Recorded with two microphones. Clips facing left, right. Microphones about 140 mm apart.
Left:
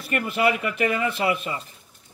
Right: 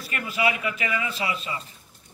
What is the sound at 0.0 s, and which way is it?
A man's voice, 55° left (ahead or behind).